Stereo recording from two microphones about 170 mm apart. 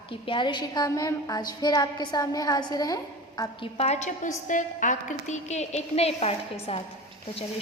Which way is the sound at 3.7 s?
40° left (ahead or behind).